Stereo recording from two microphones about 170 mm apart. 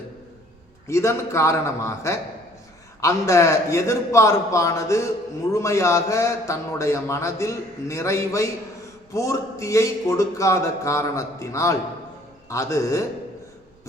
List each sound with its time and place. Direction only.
0.9 s a man's voice: 15° left (ahead or behind)